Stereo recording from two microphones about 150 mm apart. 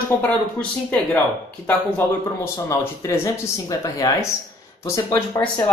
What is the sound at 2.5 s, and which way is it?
Speech, 20° left (ahead or behind).